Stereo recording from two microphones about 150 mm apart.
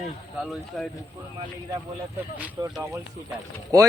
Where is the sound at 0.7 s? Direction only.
5° left (ahead or behind).